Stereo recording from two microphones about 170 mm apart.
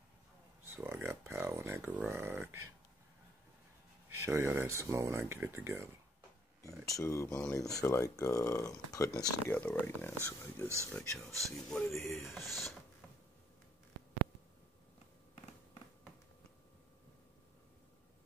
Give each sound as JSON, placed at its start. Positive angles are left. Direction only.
{"t": 0.7, "sound": "a sound", "side_deg": -15}
{"t": 4.2, "sound": "speech", "side_deg": -15}
{"t": 6.9, "sound": "speech", "side_deg": 20}
{"t": 10.9, "sound": "speech", "side_deg": 5}
{"t": 12.0, "sound": "speech", "side_deg": 15}
{"t": 12.3, "sound": "speech", "side_deg": 0}